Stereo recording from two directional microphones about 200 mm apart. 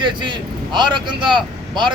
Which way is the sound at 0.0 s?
25° right (ahead or behind).